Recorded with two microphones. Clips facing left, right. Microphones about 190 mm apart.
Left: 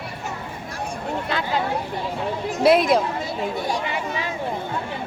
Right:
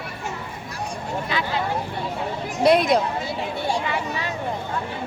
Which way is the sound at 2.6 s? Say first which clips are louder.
Left 1 dB; centre (ahead or behind).